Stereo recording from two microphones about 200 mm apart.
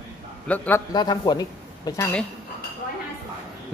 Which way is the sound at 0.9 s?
20° left (ahead or behind).